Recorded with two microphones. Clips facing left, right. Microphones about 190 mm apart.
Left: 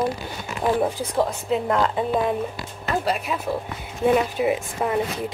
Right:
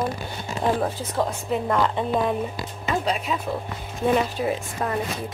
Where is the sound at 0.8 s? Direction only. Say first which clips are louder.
Left 3 dB; 15° left (ahead or behind).